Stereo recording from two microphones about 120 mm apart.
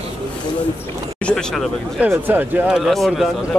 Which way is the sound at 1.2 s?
5° left (ahead or behind).